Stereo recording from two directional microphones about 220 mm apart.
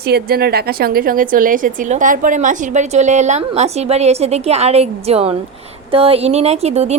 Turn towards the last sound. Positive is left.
turn(degrees=-30)  # may be behind; listen again after turning